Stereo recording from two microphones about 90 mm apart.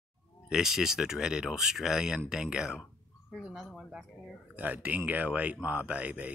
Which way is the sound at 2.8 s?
Centre (ahead or behind).